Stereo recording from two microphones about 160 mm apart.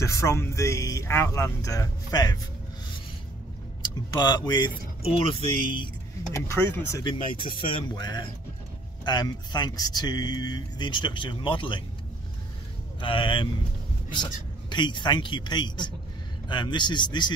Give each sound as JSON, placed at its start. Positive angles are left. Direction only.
{"t": 0.0, "sound": "speech", "side_deg": 20}
{"t": 4.1, "sound": "speech", "side_deg": 25}
{"t": 6.3, "sound": "speech", "side_deg": 15}
{"t": 7.4, "sound": "speech", "side_deg": 30}
{"t": 13.0, "sound": "speech", "side_deg": 30}